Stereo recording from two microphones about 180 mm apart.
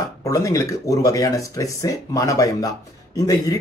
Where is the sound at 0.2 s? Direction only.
20° left (ahead or behind).